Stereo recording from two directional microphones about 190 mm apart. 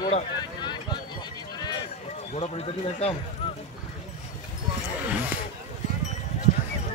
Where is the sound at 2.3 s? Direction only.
35° left (ahead or behind).